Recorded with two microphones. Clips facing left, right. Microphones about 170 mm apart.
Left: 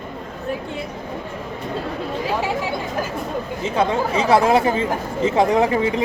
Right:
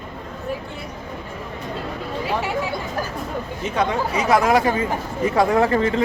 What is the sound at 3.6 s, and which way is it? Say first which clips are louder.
A woman's voice: left 2 dB; 30° left (ahead or behind).